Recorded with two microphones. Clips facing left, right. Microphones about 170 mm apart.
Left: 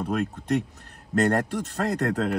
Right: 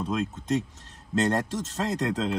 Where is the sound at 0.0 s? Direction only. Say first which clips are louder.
Left 2 dB; 60° left (ahead or behind).